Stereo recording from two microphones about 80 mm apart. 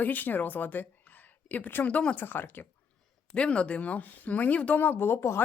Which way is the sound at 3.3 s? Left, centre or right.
Centre.